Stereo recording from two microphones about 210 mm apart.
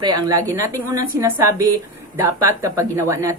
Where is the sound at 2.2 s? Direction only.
10° right (ahead or behind).